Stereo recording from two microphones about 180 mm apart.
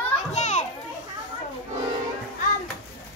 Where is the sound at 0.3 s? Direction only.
40° left (ahead or behind).